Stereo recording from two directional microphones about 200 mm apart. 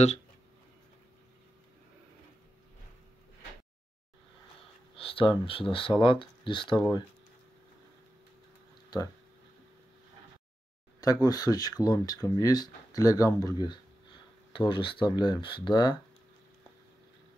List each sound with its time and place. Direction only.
4.9 s speech: 25° left (ahead or behind)
11.0 s speech: 20° left (ahead or behind)